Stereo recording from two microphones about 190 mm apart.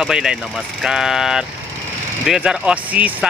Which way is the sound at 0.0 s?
5° right (ahead or behind).